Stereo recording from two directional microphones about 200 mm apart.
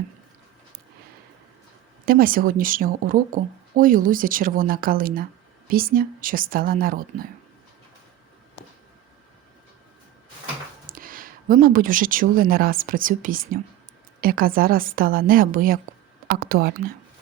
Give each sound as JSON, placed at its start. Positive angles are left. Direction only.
{"t": 2.0, "sound": "speech", "side_deg": -45}
{"t": 10.8, "sound": "speech", "side_deg": -45}